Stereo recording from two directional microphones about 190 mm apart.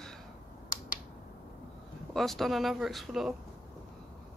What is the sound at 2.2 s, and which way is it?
Speech, centre (ahead or behind).